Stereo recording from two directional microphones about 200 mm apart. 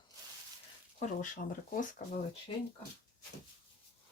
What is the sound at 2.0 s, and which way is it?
Speech, 45° left (ahead or behind).